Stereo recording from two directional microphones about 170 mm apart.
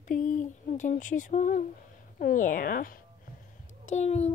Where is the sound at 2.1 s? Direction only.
55° left (ahead or behind).